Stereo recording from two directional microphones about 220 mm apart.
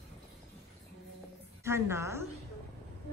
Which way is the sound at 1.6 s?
10° right (ahead or behind).